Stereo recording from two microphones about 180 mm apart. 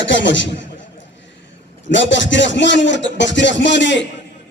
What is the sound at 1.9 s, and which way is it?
A man's voice, 90° left.